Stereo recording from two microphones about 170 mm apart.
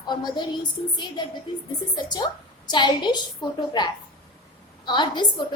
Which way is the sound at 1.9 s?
25° left (ahead or behind).